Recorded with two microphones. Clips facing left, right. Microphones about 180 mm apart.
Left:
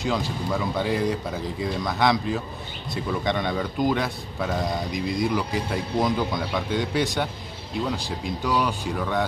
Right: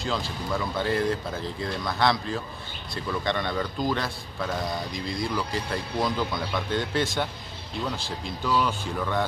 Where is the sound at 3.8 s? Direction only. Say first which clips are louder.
Left 4 dB; 15° left (ahead or behind).